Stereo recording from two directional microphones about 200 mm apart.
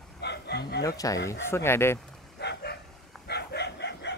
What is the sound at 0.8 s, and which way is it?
Speech, 15° left (ahead or behind).